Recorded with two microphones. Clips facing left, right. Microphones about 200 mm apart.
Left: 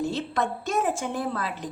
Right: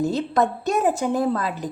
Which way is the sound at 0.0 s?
40° right (ahead or behind).